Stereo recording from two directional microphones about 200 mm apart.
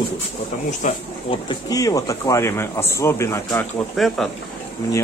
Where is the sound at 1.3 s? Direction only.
20° left (ahead or behind).